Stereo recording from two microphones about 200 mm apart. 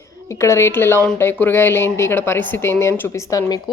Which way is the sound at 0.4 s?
15° left (ahead or behind).